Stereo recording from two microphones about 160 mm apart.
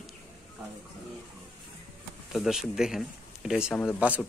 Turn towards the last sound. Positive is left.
turn(degrees=-10)  # may be behind; listen again after turning